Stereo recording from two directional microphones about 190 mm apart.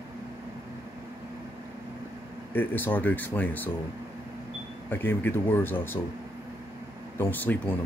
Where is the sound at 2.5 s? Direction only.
10° left (ahead or behind).